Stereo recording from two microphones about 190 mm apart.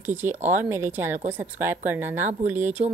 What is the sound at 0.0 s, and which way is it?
A woman's voice, 10° right (ahead or behind).